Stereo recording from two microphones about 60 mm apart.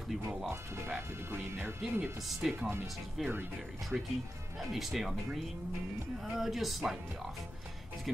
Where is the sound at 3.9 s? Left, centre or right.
Centre.